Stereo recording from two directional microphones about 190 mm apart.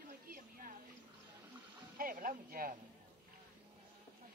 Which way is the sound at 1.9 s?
50° right (ahead or behind).